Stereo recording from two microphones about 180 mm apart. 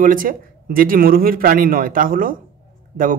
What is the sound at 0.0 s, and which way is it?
A man's voice, 50° right (ahead or behind).